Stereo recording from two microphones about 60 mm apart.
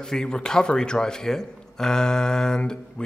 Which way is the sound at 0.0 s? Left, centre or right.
Centre.